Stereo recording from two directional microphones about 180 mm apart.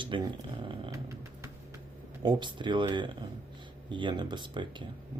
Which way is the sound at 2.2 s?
25° right (ahead or behind).